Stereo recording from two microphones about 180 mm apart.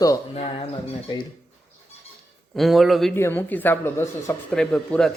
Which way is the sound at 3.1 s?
10° left (ahead or behind).